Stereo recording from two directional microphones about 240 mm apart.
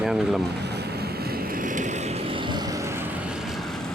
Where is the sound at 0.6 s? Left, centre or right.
Right; by 3.0 s centre.